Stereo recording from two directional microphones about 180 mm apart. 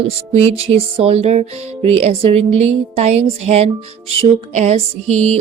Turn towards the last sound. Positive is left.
turn(degrees=-40)  # may be behind; listen again after turning